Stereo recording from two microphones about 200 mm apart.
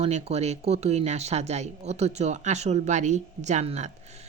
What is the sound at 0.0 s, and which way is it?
Speech, 30° right (ahead or behind).